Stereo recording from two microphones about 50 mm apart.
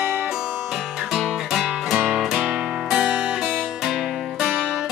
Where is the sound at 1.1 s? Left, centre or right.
Centre.